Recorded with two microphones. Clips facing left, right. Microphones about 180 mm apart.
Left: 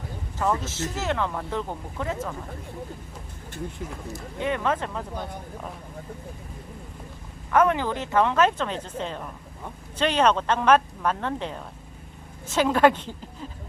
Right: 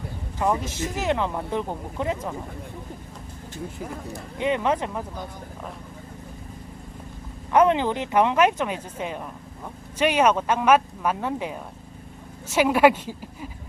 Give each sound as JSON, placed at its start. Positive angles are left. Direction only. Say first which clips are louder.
{"t": 0.3, "sound": "speech", "louder": "right 2 dB", "side_deg": -15}
{"t": 4.4, "sound": "speech", "louder": "right 3 dB", "side_deg": -20}
{"t": 7.5, "sound": "speech", "louder": "right 2 dB", "side_deg": -20}